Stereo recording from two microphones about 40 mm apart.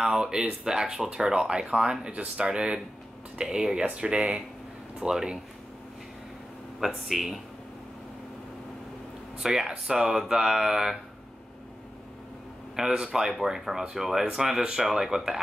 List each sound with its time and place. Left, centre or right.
0.0 s speech: centre
3.8 s speech: right
6.8 s speech: centre
9.4 s speech: centre
12.7 s speech: centre